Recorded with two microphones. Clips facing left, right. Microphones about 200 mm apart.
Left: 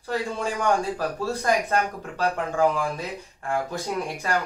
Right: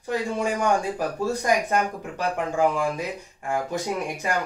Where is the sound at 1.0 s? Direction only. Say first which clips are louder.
Right 2 dB; 15° right (ahead or behind).